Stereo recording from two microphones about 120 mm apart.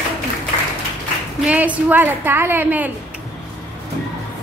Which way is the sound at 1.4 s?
10° right (ahead or behind).